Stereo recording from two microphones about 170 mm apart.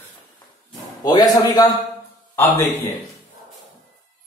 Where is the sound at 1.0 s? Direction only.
25° left (ahead or behind).